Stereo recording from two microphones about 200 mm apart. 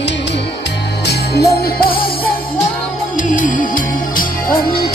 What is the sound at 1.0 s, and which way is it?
Music, 50° left (ahead or behind).